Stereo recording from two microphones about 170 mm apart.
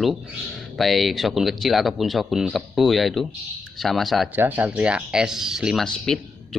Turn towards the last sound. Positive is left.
turn(degrees=0)  # may be behind; listen again after turning